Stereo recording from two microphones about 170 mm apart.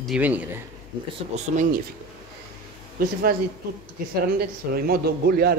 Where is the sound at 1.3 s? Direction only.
40° right (ahead or behind).